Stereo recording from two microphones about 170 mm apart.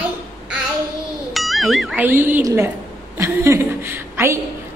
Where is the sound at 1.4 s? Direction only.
Centre (ahead or behind); by 2.7 s 15° right (ahead or behind).